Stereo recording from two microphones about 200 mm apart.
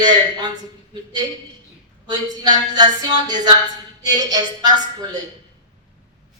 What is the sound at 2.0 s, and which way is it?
Speech, 20° right (ahead or behind).